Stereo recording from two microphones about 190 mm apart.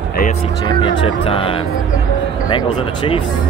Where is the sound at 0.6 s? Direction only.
25° left (ahead or behind).